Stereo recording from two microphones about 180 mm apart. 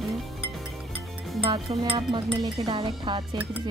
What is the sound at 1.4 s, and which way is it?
Speech, 30° right (ahead or behind).